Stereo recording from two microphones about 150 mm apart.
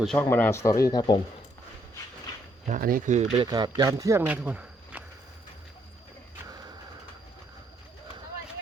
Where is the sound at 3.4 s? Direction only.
30° right (ahead or behind).